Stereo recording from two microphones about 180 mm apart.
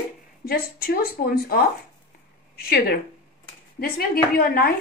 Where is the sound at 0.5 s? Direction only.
55° left (ahead or behind).